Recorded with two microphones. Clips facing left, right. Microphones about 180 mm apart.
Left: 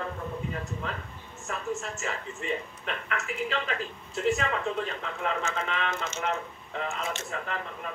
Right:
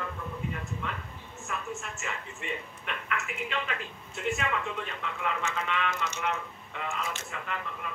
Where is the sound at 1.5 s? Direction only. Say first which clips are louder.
Left 4 dB; 35° left (ahead or behind).